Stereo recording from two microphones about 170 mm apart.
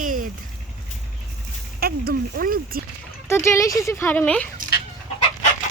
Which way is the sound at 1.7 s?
65° right (ahead or behind).